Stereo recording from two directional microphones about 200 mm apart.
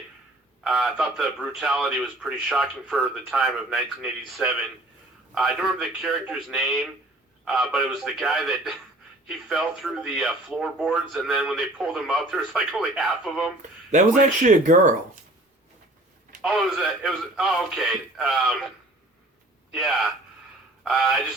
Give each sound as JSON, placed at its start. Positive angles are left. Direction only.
{"t": 0.6, "sound": "a man's voice", "side_deg": 0}
{"t": 14.4, "sound": "speech", "side_deg": -40}
{"t": 16.4, "sound": "a man's voice", "side_deg": 0}
{"t": 19.7, "sound": "a man's voice", "side_deg": 0}